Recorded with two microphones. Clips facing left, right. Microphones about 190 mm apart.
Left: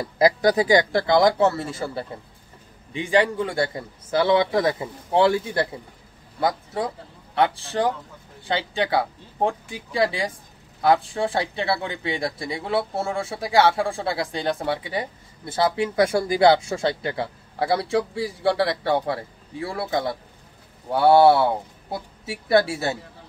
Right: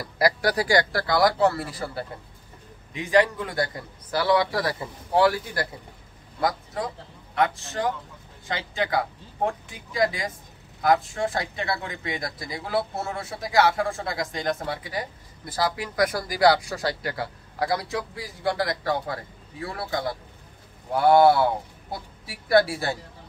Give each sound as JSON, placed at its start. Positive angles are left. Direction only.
{"t": 0.0, "sound": "a man's voice", "side_deg": 20}